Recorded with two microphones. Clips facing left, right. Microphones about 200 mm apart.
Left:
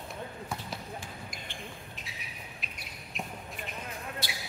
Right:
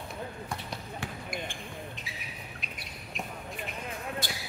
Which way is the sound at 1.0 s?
60° right (ahead or behind).